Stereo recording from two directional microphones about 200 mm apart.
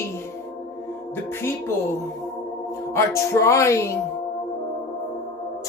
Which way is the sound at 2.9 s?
15° left (ahead or behind).